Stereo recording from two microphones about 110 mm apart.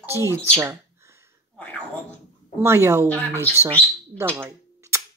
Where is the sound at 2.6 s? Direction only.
25° right (ahead or behind).